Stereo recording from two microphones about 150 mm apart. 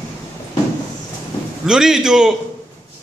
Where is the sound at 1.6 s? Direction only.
5° right (ahead or behind).